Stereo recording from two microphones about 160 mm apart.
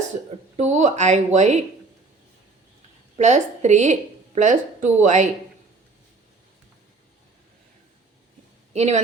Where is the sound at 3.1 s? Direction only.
45° right (ahead or behind).